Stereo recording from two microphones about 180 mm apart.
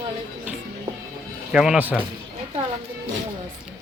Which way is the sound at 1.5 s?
5° right (ahead or behind).